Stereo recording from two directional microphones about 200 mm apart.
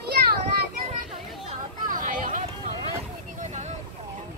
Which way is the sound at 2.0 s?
40° right (ahead or behind).